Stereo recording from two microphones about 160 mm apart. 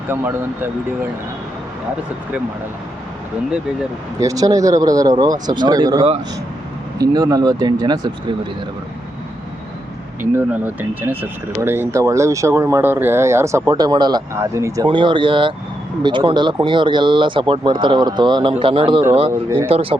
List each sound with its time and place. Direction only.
0.1 s speech: 10° right (ahead or behind)
4.2 s speech: 20° right (ahead or behind)
7.1 s speech: 25° right (ahead or behind)
10.3 s speech: 10° right (ahead or behind)
14.8 s speech: 30° right (ahead or behind)